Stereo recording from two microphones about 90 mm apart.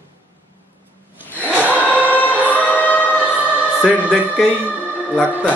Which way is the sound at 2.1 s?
15° left (ahead or behind).